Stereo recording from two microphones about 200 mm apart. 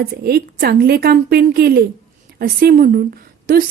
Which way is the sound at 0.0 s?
50° right (ahead or behind).